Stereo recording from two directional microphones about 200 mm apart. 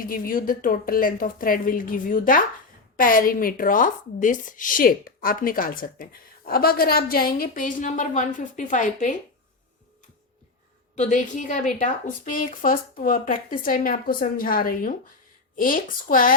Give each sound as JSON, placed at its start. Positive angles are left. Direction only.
{"t": 0.0, "sound": "speech", "side_deg": 45}
{"t": 10.9, "sound": "speech", "side_deg": 35}